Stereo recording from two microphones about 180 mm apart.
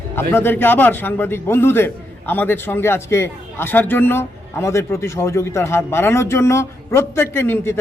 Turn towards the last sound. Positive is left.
turn(degrees=15)  # may be behind; listen again after turning